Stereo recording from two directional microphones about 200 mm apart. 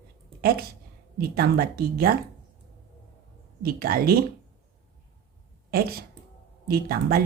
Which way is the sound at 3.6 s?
50° right (ahead or behind).